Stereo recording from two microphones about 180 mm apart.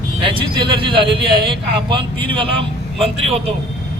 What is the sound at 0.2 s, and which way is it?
A man's voice, 30° right (ahead or behind).